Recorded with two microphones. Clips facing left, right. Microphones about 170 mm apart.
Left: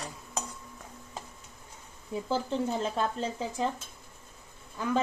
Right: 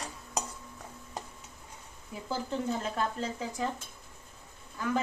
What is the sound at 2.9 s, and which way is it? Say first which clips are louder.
Speech: left 2 dB; 25° left (ahead or behind).